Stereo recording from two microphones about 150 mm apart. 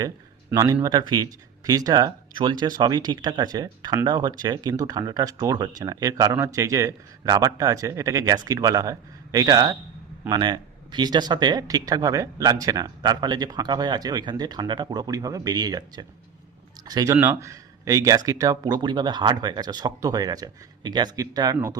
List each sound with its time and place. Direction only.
0.5 s speech: 20° right (ahead or behind)